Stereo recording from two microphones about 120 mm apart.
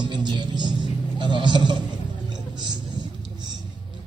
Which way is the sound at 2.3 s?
35° right (ahead or behind).